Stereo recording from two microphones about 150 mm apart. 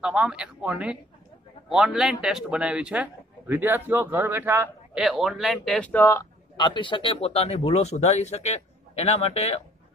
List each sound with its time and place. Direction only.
0.0 s a man's voice: 5° right (ahead or behind)
4.9 s speech: centre (ahead or behind); by 6.2 s 15° left (ahead or behind)
6.5 s speech: 30° left (ahead or behind)